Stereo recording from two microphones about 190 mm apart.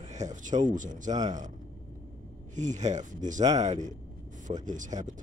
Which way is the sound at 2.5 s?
40° right (ahead or behind).